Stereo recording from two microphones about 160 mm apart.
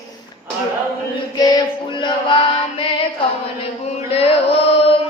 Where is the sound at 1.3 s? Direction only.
25° left (ahead or behind).